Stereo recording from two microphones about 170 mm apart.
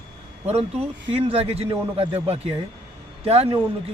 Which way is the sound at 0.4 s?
35° right (ahead or behind).